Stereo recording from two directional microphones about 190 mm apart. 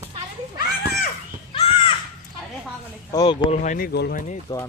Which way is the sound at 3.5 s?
40° left (ahead or behind).